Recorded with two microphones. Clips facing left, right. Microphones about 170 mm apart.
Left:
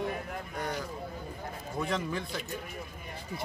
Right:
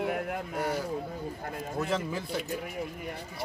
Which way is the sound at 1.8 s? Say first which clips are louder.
Right 1 dB; 5° right (ahead or behind).